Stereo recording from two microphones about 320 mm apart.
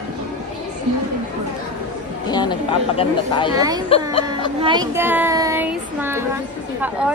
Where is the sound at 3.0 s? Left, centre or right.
Centre.